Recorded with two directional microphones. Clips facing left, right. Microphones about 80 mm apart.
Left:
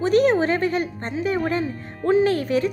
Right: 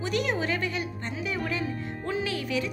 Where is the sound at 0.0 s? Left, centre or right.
Left.